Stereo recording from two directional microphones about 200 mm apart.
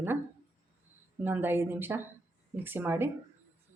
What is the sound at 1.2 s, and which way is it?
Speech, 10° right (ahead or behind).